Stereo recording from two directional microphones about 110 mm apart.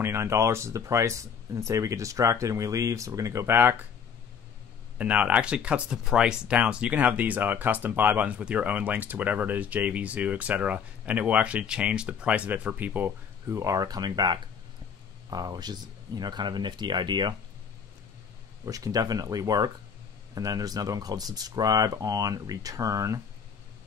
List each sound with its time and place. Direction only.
0.0 s speech: 25° right (ahead or behind)
4.9 s speech: 15° right (ahead or behind)
13.6 s speech: 30° right (ahead or behind)
18.7 s speech: 35° right (ahead or behind)